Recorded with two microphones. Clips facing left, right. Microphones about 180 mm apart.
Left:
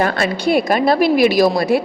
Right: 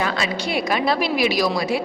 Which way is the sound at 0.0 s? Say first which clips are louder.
Left 6 dB; 55° left (ahead or behind).